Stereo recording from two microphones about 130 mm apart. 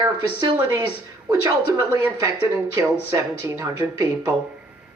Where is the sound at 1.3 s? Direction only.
20° right (ahead or behind).